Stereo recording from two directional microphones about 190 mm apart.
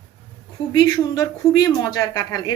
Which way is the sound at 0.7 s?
20° left (ahead or behind).